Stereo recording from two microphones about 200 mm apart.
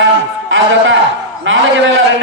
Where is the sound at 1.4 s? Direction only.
70° right (ahead or behind).